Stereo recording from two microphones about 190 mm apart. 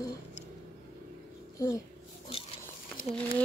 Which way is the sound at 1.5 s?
15° left (ahead or behind).